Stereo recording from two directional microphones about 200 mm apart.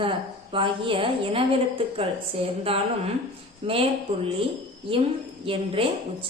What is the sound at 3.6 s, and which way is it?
Speech, 25° right (ahead or behind).